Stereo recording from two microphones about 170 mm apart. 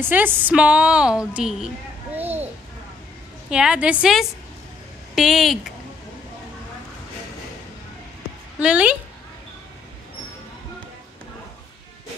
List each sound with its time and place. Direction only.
0.0 s a woman's voice: 10° right (ahead or behind)
2.1 s a sound: 10° right (ahead or behind)
3.4 s a woman's voice: 5° right (ahead or behind)
8.5 s a woman's voice: 5° right (ahead or behind)